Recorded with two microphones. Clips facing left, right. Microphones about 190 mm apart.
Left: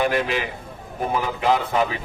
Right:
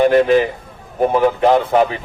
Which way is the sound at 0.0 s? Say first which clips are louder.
Right 10 dB; 45° right (ahead or behind).